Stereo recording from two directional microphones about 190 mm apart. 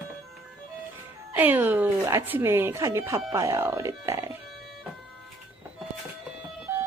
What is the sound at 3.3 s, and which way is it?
Speech, 15° right (ahead or behind).